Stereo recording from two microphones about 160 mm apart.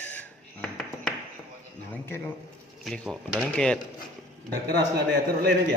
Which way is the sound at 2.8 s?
Centre (ahead or behind).